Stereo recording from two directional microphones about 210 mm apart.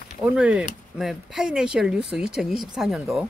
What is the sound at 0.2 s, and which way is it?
Speech, 5° right (ahead or behind).